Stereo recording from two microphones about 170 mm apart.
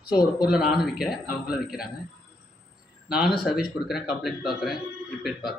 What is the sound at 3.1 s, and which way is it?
Speech, 5° right (ahead or behind).